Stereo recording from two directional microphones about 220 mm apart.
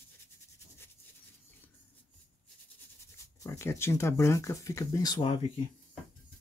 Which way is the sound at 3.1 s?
10° left (ahead or behind).